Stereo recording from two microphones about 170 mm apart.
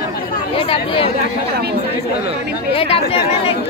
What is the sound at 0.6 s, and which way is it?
Speech, 30° left (ahead or behind).